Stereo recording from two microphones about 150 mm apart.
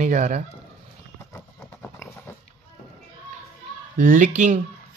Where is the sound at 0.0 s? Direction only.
55° right (ahead or behind).